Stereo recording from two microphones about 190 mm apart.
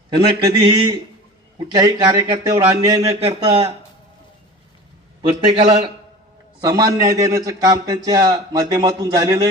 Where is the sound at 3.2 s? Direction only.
30° right (ahead or behind).